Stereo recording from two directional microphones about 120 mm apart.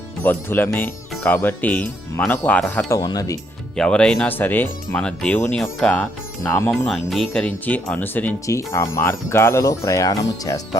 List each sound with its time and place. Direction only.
0.2 s speech: 15° left (ahead or behind)
3.0 s speech: 30° left (ahead or behind)
3.8 s speech: 5° left (ahead or behind)
6.4 s speech: 25° left (ahead or behind)
6.7 s speech: centre (ahead or behind)
8.4 s speech: 25° left (ahead or behind)